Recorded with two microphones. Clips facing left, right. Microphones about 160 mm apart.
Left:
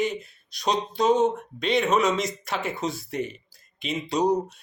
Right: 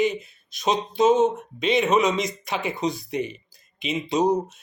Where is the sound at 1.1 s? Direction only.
Centre (ahead or behind).